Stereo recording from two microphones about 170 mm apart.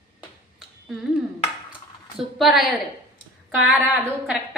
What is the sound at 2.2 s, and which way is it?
Speech, centre (ahead or behind).